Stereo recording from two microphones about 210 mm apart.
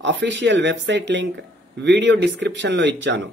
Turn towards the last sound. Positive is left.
turn(degrees=-60)  # may be behind; listen again after turning